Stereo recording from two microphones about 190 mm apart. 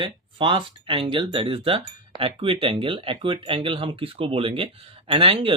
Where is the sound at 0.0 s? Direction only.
25° right (ahead or behind).